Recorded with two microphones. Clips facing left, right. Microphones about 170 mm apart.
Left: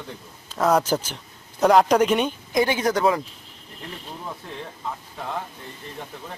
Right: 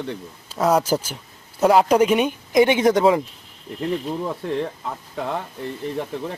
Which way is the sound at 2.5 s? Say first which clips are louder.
Right 6 dB; 25° right (ahead or behind).